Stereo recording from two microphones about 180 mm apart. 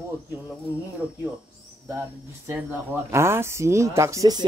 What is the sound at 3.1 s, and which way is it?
Speech, 15° right (ahead or behind).